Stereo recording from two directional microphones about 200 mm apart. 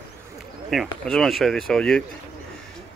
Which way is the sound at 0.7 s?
Centre (ahead or behind).